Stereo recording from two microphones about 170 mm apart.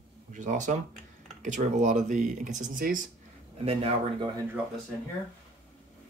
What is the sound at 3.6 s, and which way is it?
Speech, 35° right (ahead or behind).